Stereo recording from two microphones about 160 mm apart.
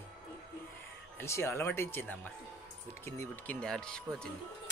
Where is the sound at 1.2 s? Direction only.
15° left (ahead or behind).